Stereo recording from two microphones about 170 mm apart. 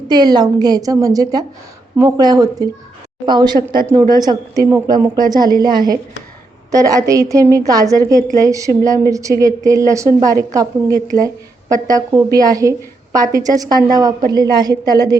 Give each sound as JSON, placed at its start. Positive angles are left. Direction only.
{"t": 0.1, "sound": "speech", "side_deg": -25}